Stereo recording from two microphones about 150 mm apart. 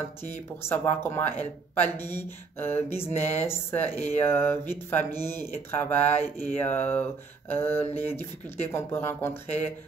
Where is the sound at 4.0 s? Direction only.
45° left (ahead or behind).